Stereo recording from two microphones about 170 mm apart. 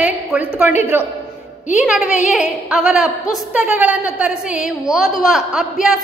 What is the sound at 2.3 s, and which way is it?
A woman's voice, 5° right (ahead or behind).